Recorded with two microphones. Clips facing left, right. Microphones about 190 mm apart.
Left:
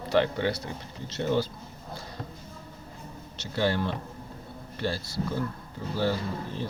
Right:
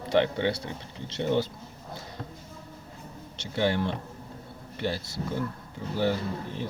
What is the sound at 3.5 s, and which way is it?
Speech, 20° right (ahead or behind).